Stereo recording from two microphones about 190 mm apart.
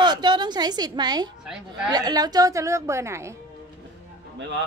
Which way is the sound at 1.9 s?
20° right (ahead or behind).